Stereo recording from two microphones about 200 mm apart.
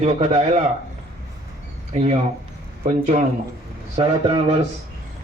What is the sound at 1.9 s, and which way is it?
Speech, 35° right (ahead or behind).